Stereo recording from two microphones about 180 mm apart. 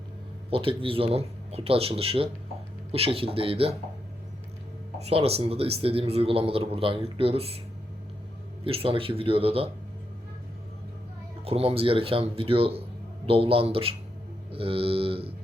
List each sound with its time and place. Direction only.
0.5 s speech: 30° right (ahead or behind)
4.9 s speech: 35° right (ahead or behind)
8.6 s speech: 30° right (ahead or behind)
11.4 s speech: 35° right (ahead or behind)